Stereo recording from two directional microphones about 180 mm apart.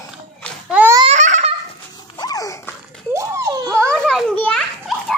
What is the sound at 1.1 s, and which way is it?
Baby laughter, 40° right (ahead or behind).